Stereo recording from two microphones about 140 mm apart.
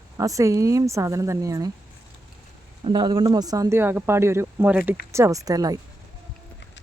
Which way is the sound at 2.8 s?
35° right (ahead or behind).